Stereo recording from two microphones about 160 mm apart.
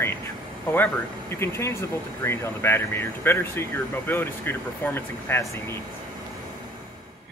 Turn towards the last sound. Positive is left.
turn(degrees=15)  # may be behind; listen again after turning